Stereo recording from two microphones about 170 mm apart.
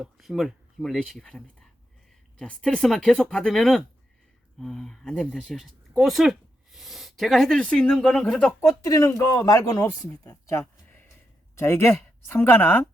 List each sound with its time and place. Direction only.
0.0 s speech: centre (ahead or behind)
8.6 s a man's voice: 20° left (ahead or behind)